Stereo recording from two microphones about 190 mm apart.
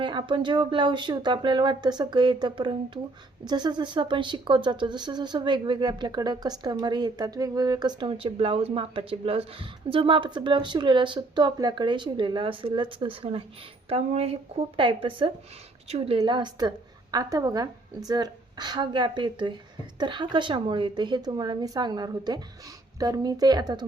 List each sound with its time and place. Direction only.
0.0 s speech: 25° right (ahead or behind)